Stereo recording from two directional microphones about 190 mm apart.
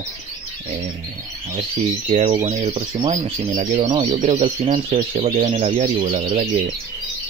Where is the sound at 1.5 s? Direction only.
35° right (ahead or behind).